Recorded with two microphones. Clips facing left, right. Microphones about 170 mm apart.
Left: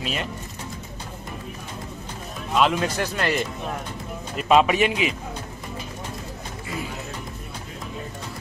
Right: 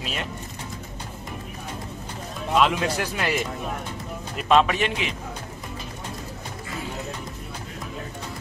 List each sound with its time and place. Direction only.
0.0 s speech: centre (ahead or behind)
2.5 s speech: centre (ahead or behind)
4.4 s speech: 5° left (ahead or behind)